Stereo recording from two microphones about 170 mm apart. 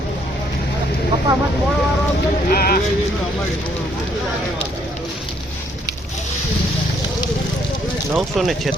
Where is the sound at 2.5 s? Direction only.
60° left (ahead or behind).